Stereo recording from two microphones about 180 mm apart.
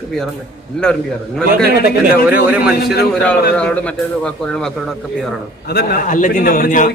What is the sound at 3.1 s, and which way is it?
A man's voice, 5° left (ahead or behind).